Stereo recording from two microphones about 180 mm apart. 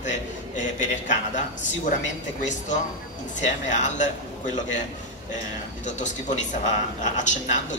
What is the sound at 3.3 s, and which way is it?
Speech, 40° left (ahead or behind).